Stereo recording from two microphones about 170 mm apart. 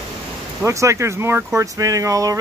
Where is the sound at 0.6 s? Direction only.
15° right (ahead or behind).